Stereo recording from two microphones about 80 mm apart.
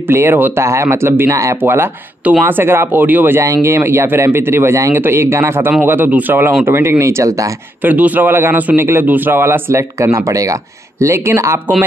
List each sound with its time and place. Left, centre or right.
0.1 s speech: right
1.3 s speech: right
1.6 s speech: right
3.3 s speech: right
7.8 s speech: right